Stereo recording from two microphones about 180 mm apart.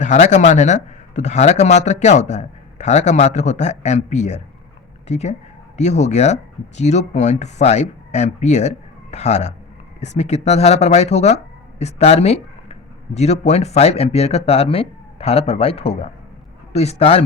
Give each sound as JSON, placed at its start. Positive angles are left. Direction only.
{"t": 0.0, "sound": "a man's voice", "side_deg": 40}